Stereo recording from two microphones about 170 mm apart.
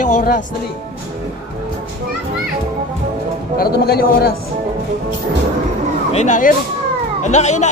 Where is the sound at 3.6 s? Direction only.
65° left (ahead or behind).